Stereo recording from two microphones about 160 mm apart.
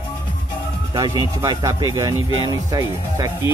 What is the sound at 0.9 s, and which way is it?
Speech, 25° right (ahead or behind).